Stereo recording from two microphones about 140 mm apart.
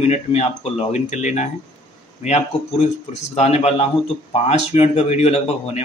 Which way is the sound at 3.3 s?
50° left (ahead or behind).